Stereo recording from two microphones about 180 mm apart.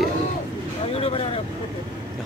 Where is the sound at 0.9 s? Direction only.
35° left (ahead or behind).